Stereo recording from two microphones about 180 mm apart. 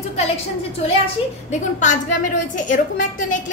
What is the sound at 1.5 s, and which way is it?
A woman's voice, 45° left (ahead or behind).